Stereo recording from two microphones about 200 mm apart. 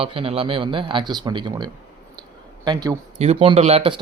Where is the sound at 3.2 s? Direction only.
30° right (ahead or behind).